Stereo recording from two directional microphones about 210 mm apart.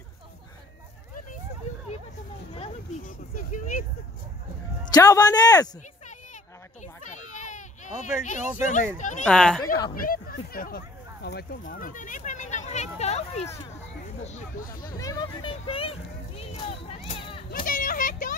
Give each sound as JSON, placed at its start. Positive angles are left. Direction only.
{"t": 2.5, "sound": "speech", "side_deg": 30}
{"t": 4.9, "sound": "a man's voice", "side_deg": 15}
{"t": 6.0, "sound": "children playing", "side_deg": 35}
{"t": 7.3, "sound": "a sound", "side_deg": 35}
{"t": 8.0, "sound": "speech", "side_deg": 35}
{"t": 9.2, "sound": "speech", "side_deg": 5}
{"t": 9.9, "sound": "speech", "side_deg": 45}
{"t": 14.8, "sound": "speech", "side_deg": 15}
{"t": 17.6, "sound": "a sound", "side_deg": 40}